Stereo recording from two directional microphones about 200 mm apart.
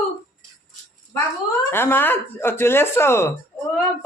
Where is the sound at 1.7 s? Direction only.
10° left (ahead or behind).